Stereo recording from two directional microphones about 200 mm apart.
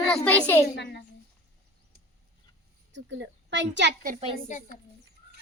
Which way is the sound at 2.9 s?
65° right (ahead or behind).